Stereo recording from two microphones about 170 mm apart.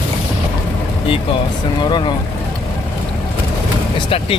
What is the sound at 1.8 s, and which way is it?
Speech, 25° left (ahead or behind).